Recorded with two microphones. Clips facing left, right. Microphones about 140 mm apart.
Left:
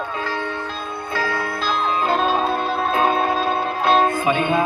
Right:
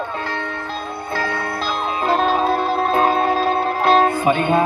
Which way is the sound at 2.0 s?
35° right (ahead or behind).